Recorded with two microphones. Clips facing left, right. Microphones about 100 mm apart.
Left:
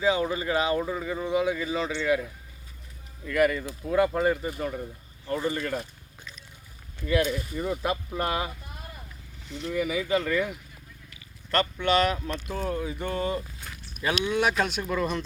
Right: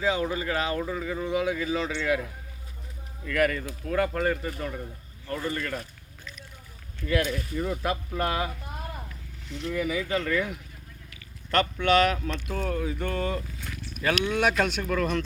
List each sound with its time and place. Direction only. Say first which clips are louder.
0.0 s speech: left 2 dB; 5° left (ahead or behind)
3.3 s speech: left 2 dB; 10° left (ahead or behind)
7.0 s speech: left 2 dB; 10° left (ahead or behind)
9.5 s speech: even; 5° left (ahead or behind)
11.9 s speech: right 1 dB; centre (ahead or behind)